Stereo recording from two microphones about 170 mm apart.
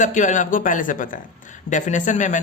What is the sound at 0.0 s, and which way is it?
Speech, 45° left (ahead or behind).